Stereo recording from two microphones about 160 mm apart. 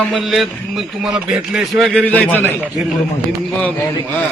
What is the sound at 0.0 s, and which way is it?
Speech, centre (ahead or behind).